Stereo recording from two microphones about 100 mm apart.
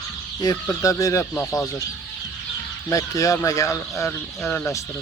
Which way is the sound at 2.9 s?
35° left (ahead or behind).